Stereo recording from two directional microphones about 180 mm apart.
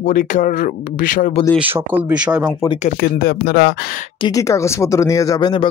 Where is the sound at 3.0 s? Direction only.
55° left (ahead or behind).